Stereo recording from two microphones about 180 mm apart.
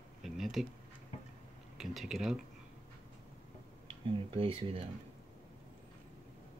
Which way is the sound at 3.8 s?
30° right (ahead or behind).